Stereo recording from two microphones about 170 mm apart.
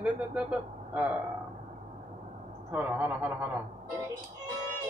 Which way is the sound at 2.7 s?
10° right (ahead or behind).